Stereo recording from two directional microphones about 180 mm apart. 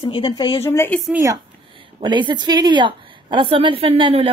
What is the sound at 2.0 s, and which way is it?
Speech, 25° right (ahead or behind).